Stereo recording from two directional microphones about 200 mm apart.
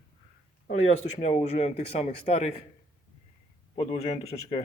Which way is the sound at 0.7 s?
30° left (ahead or behind).